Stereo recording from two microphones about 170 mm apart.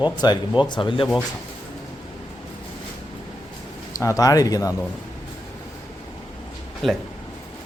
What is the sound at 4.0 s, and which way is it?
Speech, 20° left (ahead or behind).